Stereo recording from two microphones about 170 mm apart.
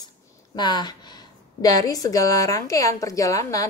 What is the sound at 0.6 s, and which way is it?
A woman's voice, 25° left (ahead or behind).